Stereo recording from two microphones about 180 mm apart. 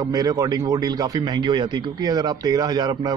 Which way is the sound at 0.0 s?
20° right (ahead or behind).